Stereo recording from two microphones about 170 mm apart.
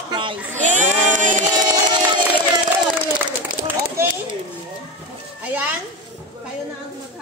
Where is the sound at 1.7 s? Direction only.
25° right (ahead or behind).